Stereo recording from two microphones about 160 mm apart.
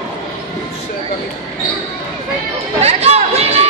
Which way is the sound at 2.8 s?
40° right (ahead or behind).